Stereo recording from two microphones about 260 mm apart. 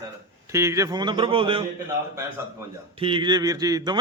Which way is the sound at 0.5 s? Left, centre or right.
Centre.